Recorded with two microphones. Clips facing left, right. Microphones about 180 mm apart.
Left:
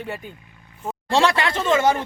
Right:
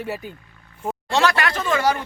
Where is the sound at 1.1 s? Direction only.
25° left (ahead or behind).